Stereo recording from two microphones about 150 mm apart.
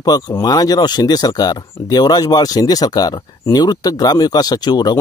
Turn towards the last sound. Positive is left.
turn(degrees=30)  # may be behind; listen again after turning